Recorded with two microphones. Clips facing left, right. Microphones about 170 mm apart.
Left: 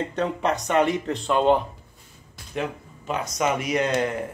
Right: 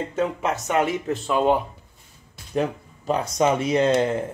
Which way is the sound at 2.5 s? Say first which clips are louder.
Right 5 dB; 35° right (ahead or behind).